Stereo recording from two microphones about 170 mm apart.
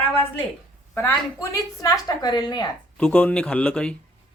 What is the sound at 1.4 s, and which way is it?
A woman's voice, 20° left (ahead or behind).